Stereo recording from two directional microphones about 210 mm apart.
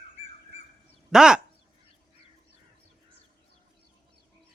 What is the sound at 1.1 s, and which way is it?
Speech, 5° right (ahead or behind).